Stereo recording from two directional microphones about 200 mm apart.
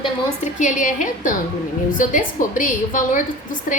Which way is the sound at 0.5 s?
40° left (ahead or behind).